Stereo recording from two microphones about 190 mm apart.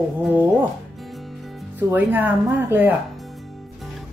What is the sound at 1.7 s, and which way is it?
Speech, 10° right (ahead or behind).